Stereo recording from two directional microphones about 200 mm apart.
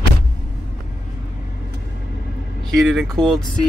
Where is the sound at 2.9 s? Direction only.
Centre (ahead or behind).